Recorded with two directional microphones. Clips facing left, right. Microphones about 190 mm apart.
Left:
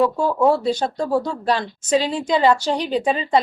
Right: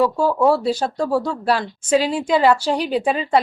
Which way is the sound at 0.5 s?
5° right (ahead or behind).